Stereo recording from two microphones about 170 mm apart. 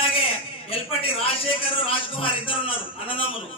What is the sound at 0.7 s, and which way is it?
A man's voice, 35° left (ahead or behind).